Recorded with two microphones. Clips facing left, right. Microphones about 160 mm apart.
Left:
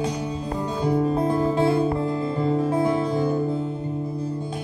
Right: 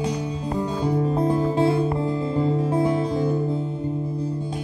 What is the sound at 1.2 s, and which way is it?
Music, 20° right (ahead or behind).